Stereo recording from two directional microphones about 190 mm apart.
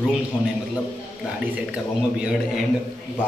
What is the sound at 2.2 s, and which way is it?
Speech, 5° right (ahead or behind).